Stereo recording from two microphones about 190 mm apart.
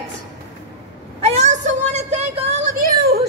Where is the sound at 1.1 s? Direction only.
35° right (ahead or behind).